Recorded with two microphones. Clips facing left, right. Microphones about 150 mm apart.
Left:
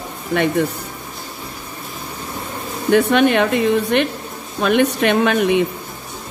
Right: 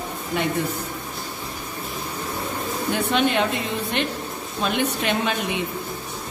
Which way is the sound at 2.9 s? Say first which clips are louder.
Left 9 dB; 65° left (ahead or behind).